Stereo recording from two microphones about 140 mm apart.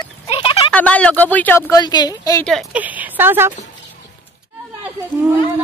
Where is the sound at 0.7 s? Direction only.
10° left (ahead or behind).